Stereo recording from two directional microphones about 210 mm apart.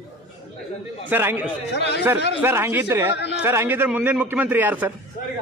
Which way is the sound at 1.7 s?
55° left (ahead or behind).